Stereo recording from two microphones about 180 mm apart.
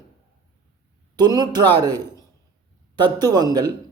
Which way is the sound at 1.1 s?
20° right (ahead or behind).